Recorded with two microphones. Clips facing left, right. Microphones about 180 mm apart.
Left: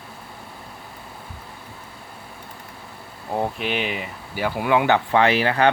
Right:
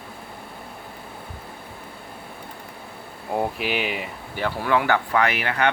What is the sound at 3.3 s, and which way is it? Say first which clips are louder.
Speech: even; 5° right (ahead or behind).